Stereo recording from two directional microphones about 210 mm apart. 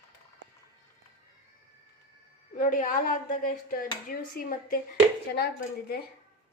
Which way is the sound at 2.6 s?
40° left (ahead or behind).